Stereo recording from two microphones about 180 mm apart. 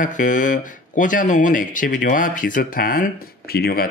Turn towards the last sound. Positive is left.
turn(degrees=60)  # may be behind; listen again after turning